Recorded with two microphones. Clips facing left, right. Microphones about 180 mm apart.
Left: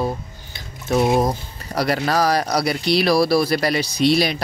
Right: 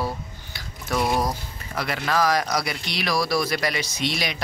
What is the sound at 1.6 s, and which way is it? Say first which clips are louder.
Speech: left 7 dB; 40° left (ahead or behind).